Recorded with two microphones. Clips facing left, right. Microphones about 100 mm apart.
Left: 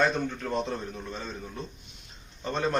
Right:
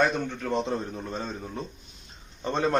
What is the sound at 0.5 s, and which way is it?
A man's voice, 30° right (ahead or behind).